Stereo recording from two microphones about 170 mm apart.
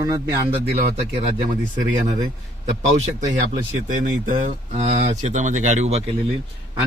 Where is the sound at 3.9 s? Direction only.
50° right (ahead or behind).